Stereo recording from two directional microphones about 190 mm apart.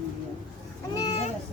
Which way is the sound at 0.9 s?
25° left (ahead or behind).